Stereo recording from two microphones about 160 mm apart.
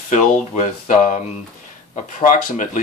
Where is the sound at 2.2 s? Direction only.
50° left (ahead or behind).